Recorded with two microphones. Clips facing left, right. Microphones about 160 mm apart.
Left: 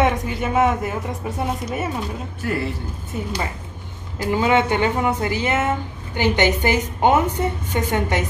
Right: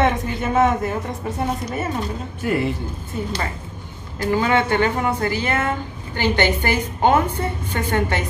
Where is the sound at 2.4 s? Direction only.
20° right (ahead or behind).